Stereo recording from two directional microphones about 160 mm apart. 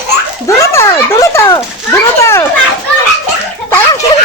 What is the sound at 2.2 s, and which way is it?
Children playing, 15° left (ahead or behind).